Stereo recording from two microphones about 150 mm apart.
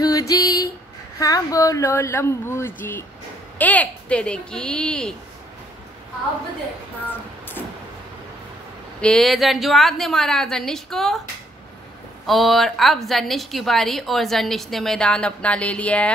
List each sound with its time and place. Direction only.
0.0 s a sound: 25° left (ahead or behind)
1.2 s speech: 25° left (ahead or behind); by 5.1 s 5° left (ahead or behind)
9.0 s a woman's voice: 5° left (ahead or behind)
12.3 s a woman's voice: centre (ahead or behind)